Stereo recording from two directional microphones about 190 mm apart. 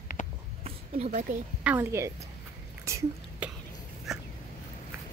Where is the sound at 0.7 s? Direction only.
30° right (ahead or behind).